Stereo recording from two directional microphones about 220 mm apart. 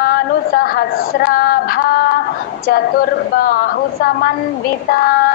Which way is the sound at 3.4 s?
45° left (ahead or behind).